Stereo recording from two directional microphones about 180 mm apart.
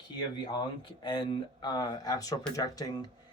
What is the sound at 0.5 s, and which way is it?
Speech, 25° left (ahead or behind).